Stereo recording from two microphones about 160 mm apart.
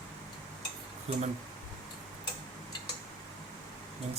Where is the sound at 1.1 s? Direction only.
40° right (ahead or behind).